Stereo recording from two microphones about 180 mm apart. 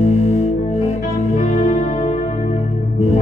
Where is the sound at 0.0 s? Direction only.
40° left (ahead or behind).